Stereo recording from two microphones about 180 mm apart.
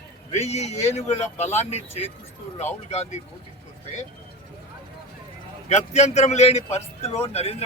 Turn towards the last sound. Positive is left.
turn(degrees=35)  # may be behind; listen again after turning